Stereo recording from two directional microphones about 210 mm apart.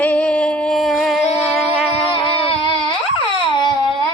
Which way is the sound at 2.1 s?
25° left (ahead or behind).